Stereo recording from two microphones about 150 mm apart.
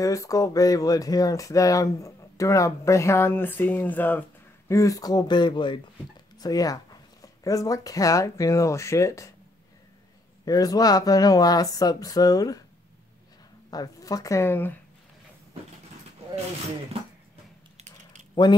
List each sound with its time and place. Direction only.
0.0 s speech: 20° left (ahead or behind)
10.4 s speech: 25° left (ahead or behind)
13.7 s speech: 25° left (ahead or behind)
17.7 s a sound: 50° right (ahead or behind)
18.3 s speech: 30° left (ahead or behind)